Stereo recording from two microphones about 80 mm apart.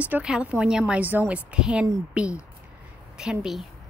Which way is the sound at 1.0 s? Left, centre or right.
Right.